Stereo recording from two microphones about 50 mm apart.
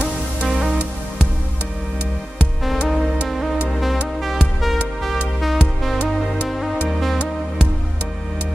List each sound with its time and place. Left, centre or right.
2.9 s music: centre